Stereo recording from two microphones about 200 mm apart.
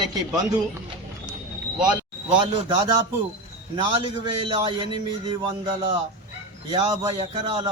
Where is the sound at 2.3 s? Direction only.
25° right (ahead or behind).